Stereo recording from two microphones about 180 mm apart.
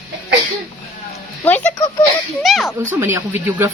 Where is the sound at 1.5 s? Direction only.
10° left (ahead or behind).